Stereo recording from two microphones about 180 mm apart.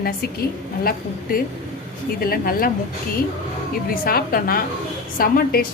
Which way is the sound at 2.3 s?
55° left (ahead or behind).